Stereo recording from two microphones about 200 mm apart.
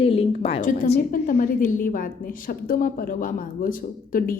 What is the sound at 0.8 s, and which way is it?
A woman's voice, 40° left (ahead or behind).